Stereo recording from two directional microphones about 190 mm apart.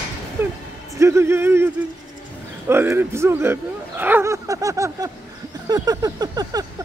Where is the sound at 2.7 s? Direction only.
10° right (ahead or behind).